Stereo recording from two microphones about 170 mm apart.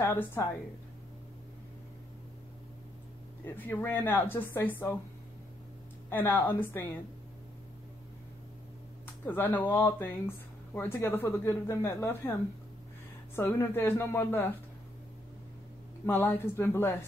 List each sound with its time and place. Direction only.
0.0 s a woman's voice: 15° left (ahead or behind)
3.4 s speech: 10° left (ahead or behind)
6.0 s speech: 10° left (ahead or behind)
9.0 s speech: 10° left (ahead or behind)
13.4 s speech: 10° left (ahead or behind)
16.1 s speech: 10° left (ahead or behind)